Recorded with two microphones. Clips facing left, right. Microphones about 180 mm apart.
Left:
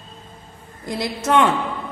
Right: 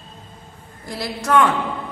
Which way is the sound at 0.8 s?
20° left (ahead or behind).